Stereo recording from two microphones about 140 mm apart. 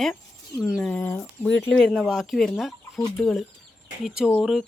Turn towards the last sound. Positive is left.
turn(degrees=0)  # may be behind; listen again after turning